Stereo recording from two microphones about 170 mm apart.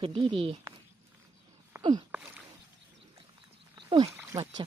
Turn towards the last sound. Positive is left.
turn(degrees=-20)  # may be behind; listen again after turning